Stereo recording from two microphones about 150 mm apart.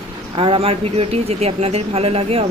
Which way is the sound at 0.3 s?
40° right (ahead or behind).